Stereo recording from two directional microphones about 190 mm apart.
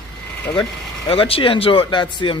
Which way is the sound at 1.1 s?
30° left (ahead or behind).